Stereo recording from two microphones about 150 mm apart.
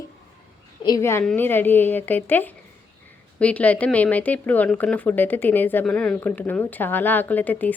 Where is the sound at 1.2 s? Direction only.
10° left (ahead or behind).